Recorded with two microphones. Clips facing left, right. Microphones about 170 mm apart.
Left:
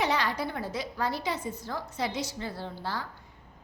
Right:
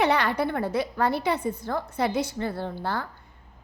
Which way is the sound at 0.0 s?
60° right (ahead or behind).